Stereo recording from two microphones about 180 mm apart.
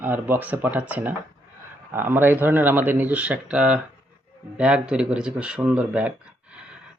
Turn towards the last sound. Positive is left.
turn(degrees=-5)  # may be behind; listen again after turning